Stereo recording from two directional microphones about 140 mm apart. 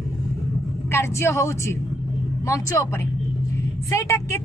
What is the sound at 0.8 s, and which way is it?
A woman's voice, 20° left (ahead or behind).